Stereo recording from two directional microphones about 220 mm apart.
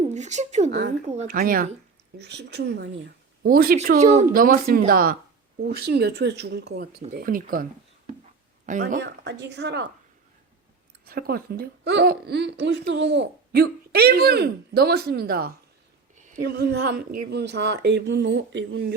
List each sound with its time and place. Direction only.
0.1 s speech: 30° right (ahead or behind)
0.7 s speech: 50° right (ahead or behind)
1.0 s speech: 30° right (ahead or behind)
3.8 s speech: 30° right (ahead or behind)
8.8 s speech: 50° right (ahead or behind)
11.0 s speech: 45° right (ahead or behind)